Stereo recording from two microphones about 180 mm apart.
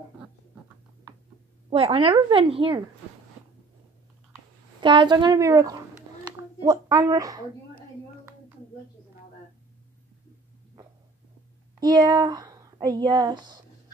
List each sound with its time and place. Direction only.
1.7 s a woman's voice: 30° right (ahead or behind)
4.7 s a woman's voice: 25° right (ahead or behind)
11.8 s speech: 20° right (ahead or behind)